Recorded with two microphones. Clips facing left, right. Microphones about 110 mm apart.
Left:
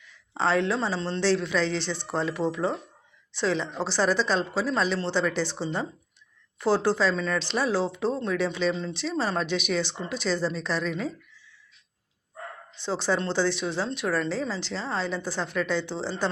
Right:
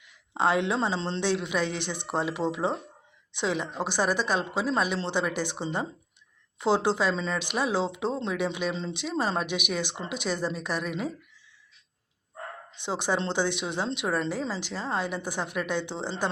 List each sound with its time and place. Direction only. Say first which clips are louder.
0.0 s speech: right 1 dB; 15° right (ahead or behind)
12.8 s speech: left 2 dB; 15° right (ahead or behind)